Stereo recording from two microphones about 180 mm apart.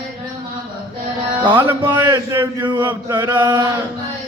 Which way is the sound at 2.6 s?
25° right (ahead or behind).